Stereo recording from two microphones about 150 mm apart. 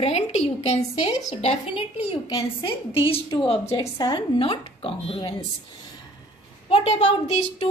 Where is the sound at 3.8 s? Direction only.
25° left (ahead or behind).